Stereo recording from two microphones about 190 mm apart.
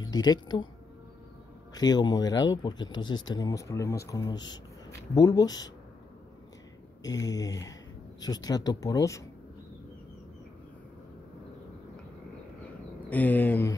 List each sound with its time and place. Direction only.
0.0 s speech: 20° left (ahead or behind)
1.7 s speech: 20° left (ahead or behind)
7.0 s speech: 20° left (ahead or behind)
13.1 s speech: 10° left (ahead or behind)